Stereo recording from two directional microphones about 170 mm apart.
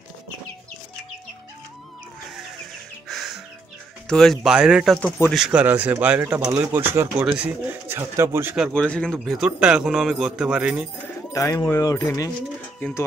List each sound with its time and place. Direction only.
3.1 s music: centre (ahead or behind)
4.1 s a man's voice: centre (ahead or behind)
5.4 s speech: 10° right (ahead or behind)
8.7 s a man's voice: 5° left (ahead or behind)
11.3 s speech: 20° left (ahead or behind)